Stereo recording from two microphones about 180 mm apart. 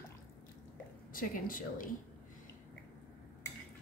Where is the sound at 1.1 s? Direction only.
50° left (ahead or behind).